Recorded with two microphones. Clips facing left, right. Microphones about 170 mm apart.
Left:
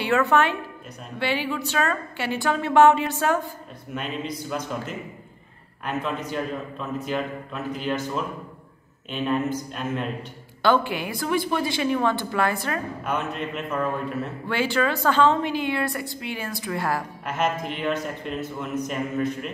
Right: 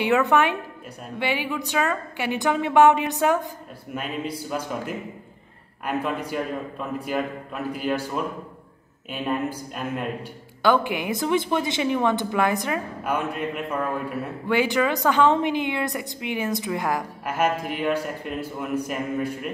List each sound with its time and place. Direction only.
0.0 s a woman's voice: 15° right (ahead or behind)
4.5 s a woman's voice: 10° right (ahead or behind)